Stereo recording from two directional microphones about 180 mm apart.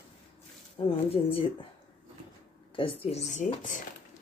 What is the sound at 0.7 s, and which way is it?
Speech, 30° left (ahead or behind).